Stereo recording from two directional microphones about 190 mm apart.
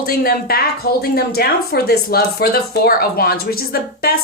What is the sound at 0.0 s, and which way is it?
A woman's voice, 50° left (ahead or behind).